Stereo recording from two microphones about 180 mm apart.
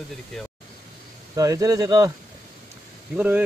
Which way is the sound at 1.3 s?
20° right (ahead or behind).